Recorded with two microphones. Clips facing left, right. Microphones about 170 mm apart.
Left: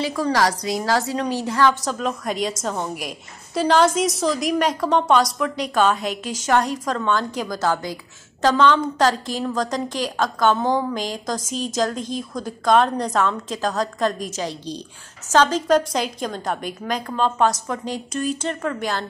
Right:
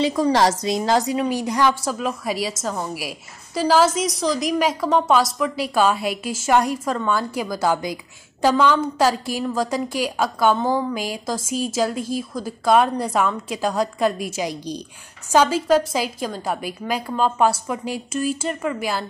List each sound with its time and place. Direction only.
0.0 s a woman's voice: 20° right (ahead or behind)